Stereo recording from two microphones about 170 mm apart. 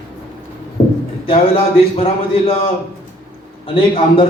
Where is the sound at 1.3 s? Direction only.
35° left (ahead or behind).